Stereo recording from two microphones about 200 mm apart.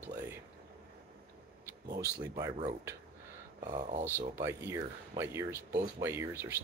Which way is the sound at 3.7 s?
35° right (ahead or behind).